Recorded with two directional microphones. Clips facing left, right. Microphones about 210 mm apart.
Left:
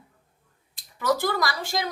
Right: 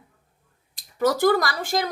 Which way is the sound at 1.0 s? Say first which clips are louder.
Right 5 dB; 50° right (ahead or behind).